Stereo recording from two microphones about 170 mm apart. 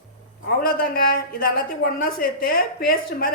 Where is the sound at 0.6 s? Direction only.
60° left (ahead or behind).